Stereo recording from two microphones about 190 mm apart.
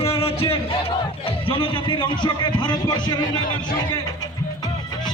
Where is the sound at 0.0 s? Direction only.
30° left (ahead or behind).